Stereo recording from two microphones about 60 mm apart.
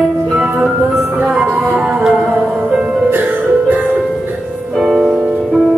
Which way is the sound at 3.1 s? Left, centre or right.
Right.